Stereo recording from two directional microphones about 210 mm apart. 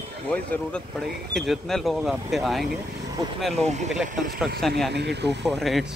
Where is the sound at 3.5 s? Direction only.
30° right (ahead or behind).